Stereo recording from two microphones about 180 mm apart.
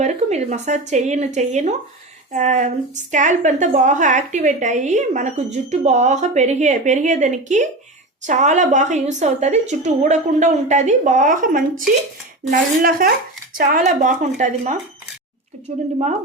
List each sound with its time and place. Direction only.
0.0 s a woman's voice: 40° right (ahead or behind)